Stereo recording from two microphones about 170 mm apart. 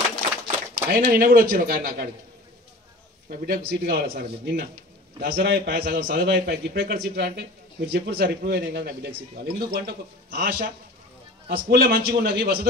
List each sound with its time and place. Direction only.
0.8 s speech: 60° right (ahead or behind)
3.3 s a man's voice: 60° right (ahead or behind)